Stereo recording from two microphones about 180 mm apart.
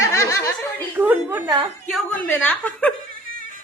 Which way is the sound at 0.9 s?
10° right (ahead or behind).